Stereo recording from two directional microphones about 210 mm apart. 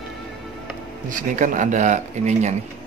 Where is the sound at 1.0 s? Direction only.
35° right (ahead or behind).